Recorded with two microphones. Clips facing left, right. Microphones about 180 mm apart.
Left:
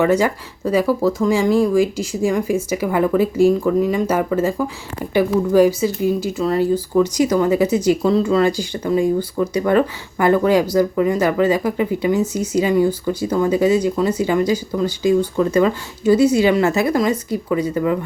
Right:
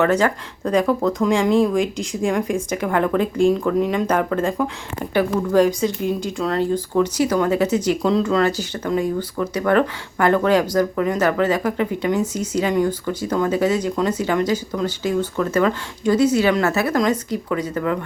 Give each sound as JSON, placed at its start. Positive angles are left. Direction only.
{"t": 0.0, "sound": "speech", "side_deg": 10}